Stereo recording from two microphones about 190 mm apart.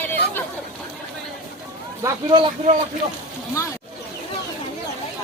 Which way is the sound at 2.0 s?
25° right (ahead or behind).